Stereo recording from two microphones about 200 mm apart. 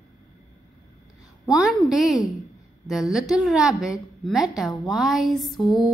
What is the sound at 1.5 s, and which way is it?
A woman's voice, centre (ahead or behind).